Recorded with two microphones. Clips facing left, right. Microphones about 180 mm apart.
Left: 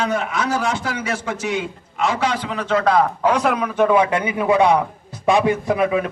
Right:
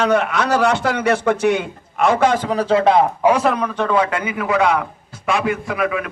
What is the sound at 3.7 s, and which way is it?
Speech, 10° left (ahead or behind).